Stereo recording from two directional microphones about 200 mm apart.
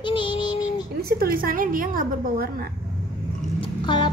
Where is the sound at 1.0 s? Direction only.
50° right (ahead or behind).